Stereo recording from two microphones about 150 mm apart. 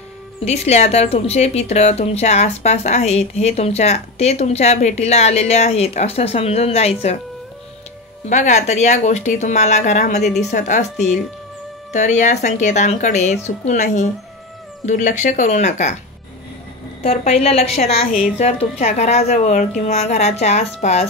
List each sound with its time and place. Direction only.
0.5 s a woman's voice: 45° left (ahead or behind)
8.3 s a woman's voice: 50° left (ahead or behind)
17.0 s a woman's voice: 45° left (ahead or behind)